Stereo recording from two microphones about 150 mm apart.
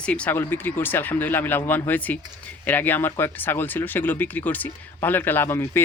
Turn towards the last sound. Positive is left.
turn(degrees=15)  # may be behind; listen again after turning